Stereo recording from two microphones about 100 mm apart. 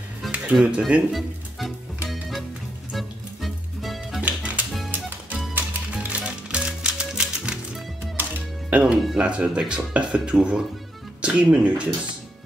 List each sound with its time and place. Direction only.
0.3 s music: 10° right (ahead or behind)
0.7 s speech: 10° right (ahead or behind)
2.0 s music: centre (ahead or behind)
4.2 s music: 15° right (ahead or behind)
9.0 s speech: 5° right (ahead or behind)